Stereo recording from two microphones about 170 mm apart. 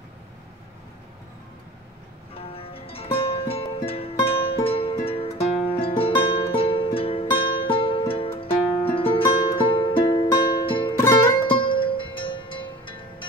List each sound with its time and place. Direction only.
2.3 s music: 35° left (ahead or behind)
11.0 s music: 15° left (ahead or behind)
11.4 s music: 30° left (ahead or behind)